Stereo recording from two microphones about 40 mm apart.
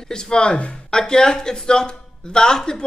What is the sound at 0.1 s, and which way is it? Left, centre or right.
A woman's voice, centre.